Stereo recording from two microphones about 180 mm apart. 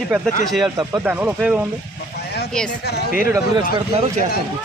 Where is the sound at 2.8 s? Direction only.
65° left (ahead or behind).